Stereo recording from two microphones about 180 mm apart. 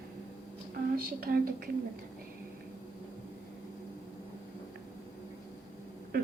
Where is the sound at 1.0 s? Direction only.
55° right (ahead or behind).